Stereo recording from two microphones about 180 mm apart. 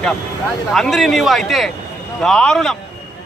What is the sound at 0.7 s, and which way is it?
Speech, centre (ahead or behind).